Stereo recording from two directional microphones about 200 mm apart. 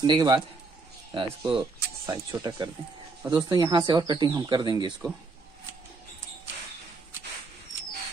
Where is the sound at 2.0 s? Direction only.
20° right (ahead or behind).